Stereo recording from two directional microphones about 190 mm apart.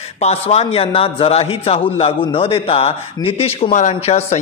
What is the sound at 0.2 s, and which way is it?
A man's voice, 35° left (ahead or behind).